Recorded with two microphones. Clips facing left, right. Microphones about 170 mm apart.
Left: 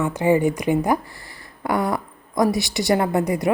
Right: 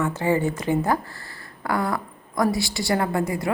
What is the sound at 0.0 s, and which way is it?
A woman's voice, 15° left (ahead or behind).